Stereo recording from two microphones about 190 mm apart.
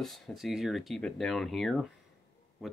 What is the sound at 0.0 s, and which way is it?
Speech, centre (ahead or behind).